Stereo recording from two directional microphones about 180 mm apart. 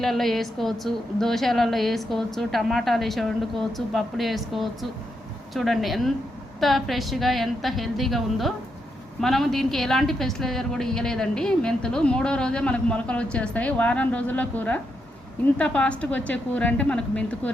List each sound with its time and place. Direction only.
0.0 s a woman's voice: centre (ahead or behind)